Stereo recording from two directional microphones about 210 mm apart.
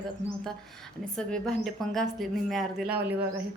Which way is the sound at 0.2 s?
60° left (ahead or behind).